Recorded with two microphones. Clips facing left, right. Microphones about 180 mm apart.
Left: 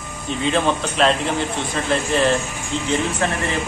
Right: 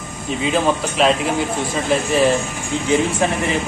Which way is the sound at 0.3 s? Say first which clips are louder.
Right 1 dB; 5° right (ahead or behind).